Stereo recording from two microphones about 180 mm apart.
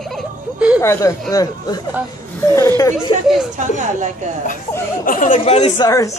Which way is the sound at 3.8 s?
45° right (ahead or behind).